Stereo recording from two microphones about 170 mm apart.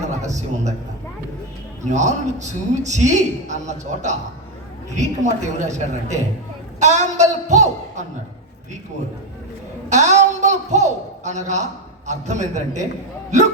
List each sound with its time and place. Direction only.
0.3 s a man's voice: 45° right (ahead or behind)
1.8 s a man's voice: 45° right (ahead or behind)
9.9 s a man's voice: 45° right (ahead or behind)